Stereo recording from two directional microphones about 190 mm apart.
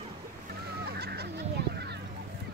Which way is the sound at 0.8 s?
55° right (ahead or behind).